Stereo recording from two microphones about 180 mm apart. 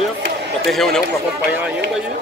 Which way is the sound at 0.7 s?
Centre (ahead or behind).